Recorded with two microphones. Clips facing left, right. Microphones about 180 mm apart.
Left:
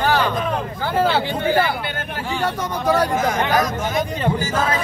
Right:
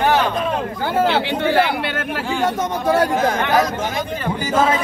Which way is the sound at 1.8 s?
90° right.